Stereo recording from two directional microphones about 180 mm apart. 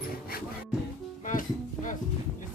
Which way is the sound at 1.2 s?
45° left (ahead or behind).